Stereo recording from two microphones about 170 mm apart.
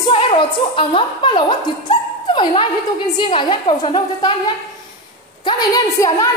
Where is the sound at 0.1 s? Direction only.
30° left (ahead or behind).